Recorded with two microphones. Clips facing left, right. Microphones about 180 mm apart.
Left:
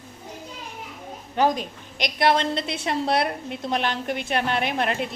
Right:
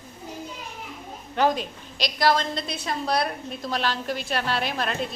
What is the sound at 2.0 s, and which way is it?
A woman's voice, 20° left (ahead or behind).